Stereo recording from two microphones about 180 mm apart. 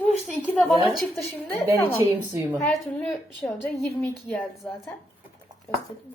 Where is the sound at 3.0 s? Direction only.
5° left (ahead or behind).